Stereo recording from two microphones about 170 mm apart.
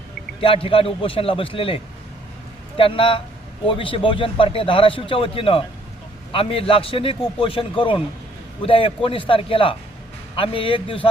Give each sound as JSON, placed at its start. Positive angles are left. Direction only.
{"t": 0.4, "sound": "a man's voice", "side_deg": 30}